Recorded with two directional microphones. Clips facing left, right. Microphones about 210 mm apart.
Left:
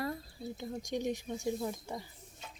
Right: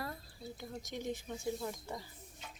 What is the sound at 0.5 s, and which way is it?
Speech, 20° left (ahead or behind).